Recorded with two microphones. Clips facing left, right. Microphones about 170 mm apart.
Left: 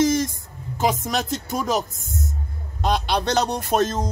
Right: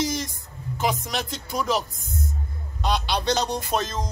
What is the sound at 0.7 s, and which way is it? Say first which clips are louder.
A man's voice: left 4 dB; 45° left (ahead or behind).